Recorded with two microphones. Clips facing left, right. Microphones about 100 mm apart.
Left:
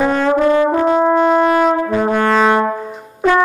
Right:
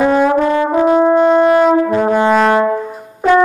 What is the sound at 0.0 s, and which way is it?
Brass instrument, 10° right (ahead or behind).